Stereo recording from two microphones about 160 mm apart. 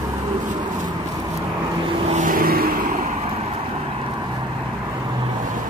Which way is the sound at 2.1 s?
60° right (ahead or behind).